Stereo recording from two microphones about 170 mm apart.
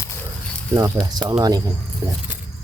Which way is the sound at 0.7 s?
20° right (ahead or behind).